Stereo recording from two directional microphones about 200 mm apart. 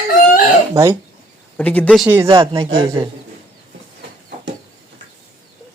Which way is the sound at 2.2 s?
25° right (ahead or behind).